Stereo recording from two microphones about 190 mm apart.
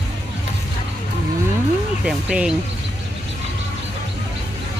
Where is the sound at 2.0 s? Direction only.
5° right (ahead or behind).